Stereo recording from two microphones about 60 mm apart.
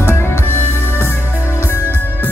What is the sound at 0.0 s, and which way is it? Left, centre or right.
Music, left.